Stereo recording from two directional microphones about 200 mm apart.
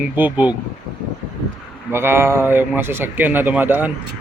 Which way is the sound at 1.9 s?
10° right (ahead or behind).